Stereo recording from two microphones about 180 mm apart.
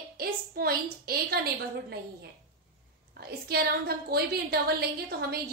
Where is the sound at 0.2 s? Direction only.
55° right (ahead or behind).